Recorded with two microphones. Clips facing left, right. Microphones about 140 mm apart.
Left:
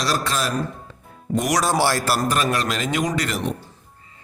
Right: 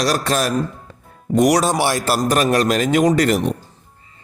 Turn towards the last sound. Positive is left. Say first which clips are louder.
# right 8 dB
turn(degrees=-45)  # may be behind; listen again after turning